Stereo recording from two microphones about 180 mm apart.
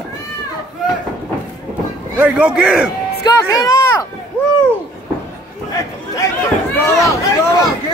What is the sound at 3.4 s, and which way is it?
Speech, 20° left (ahead or behind).